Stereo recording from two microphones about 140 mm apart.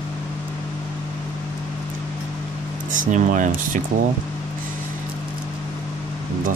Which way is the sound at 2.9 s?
70° right (ahead or behind).